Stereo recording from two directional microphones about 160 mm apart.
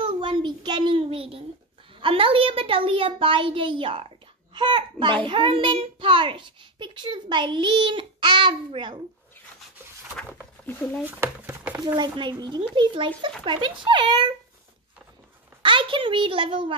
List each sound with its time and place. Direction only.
0.0 s a child's voice: 30° right (ahead or behind)
10.7 s speech: 10° left (ahead or behind)
11.1 s speech: 10° right (ahead or behind)
11.8 s a child's voice: 25° right (ahead or behind)
15.6 s a child's voice: 30° right (ahead or behind)